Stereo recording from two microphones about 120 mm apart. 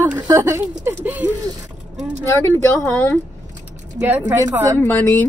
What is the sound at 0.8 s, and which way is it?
Speech, 15° right (ahead or behind).